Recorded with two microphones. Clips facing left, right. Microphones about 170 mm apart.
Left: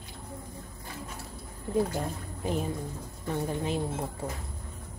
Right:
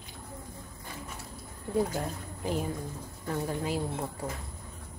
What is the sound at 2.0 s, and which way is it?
A woman's voice, 20° left (ahead or behind).